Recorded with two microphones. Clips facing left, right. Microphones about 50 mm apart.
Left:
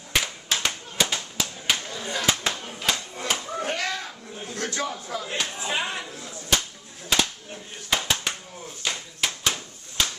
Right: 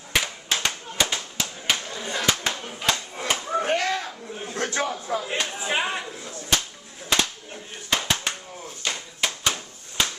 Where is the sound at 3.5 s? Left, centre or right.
Right.